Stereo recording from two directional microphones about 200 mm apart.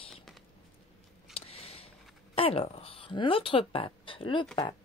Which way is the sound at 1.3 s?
30° left (ahead or behind).